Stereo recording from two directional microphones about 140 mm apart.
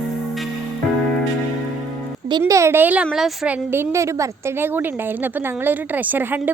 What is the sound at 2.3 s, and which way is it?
Speech, 25° right (ahead or behind).